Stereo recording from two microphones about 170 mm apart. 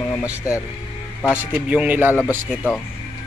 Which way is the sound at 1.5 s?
10° right (ahead or behind).